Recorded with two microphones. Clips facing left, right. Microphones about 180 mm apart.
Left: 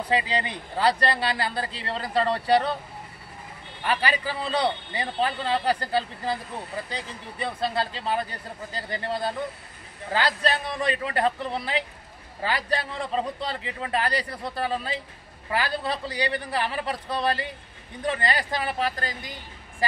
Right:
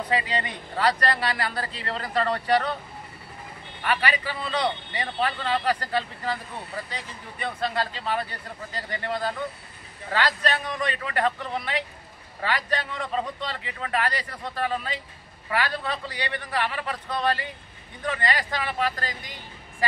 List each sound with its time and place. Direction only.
0.1 s speech: 30° left (ahead or behind)
3.8 s a man's voice: 30° left (ahead or behind)